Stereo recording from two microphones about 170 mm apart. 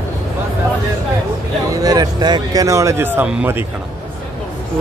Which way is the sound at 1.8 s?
20° right (ahead or behind).